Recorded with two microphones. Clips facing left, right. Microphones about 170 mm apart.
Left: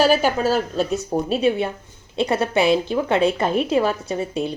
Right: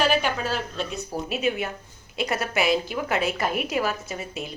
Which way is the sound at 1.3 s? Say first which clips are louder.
Left 6 dB; 30° left (ahead or behind).